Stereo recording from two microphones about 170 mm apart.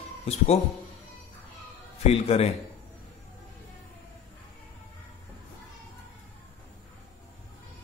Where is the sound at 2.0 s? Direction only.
35° left (ahead or behind).